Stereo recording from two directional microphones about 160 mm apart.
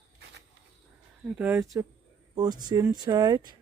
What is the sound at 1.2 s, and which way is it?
Speech, 10° right (ahead or behind).